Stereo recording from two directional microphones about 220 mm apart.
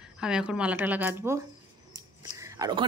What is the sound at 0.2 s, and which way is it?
A woman's voice, 5° right (ahead or behind).